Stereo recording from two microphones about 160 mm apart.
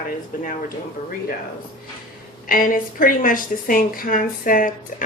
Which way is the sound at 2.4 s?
60° left (ahead or behind).